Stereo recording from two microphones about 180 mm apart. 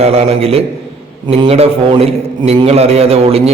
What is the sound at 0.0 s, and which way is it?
A man's voice, 35° right (ahead or behind).